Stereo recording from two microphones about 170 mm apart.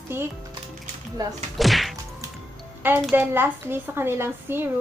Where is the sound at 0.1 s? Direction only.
15° right (ahead or behind).